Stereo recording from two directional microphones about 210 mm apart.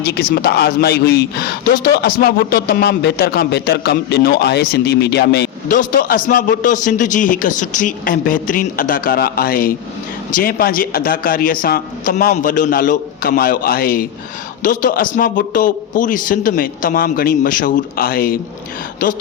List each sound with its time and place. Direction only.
0.0 s a man's voice: 50° left (ahead or behind)